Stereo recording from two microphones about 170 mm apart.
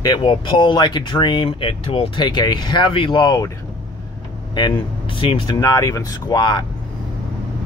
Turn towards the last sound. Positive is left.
turn(degrees=25)  # may be behind; listen again after turning